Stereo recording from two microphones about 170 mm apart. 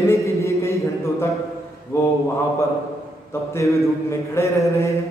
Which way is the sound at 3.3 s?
15° left (ahead or behind).